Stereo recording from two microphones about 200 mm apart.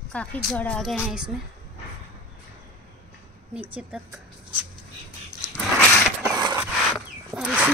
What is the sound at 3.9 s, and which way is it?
Speech, 5° right (ahead or behind).